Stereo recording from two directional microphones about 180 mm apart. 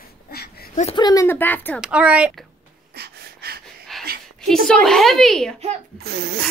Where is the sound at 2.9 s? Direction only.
65° right (ahead or behind).